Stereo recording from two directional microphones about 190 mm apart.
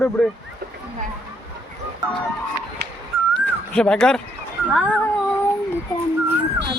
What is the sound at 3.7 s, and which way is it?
Speech, 5° left (ahead or behind).